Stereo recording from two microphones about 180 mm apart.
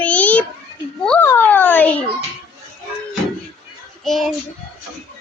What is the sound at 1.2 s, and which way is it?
Speech, 10° left (ahead or behind).